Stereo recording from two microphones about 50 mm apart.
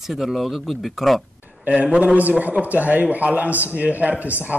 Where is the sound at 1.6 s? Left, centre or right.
Right.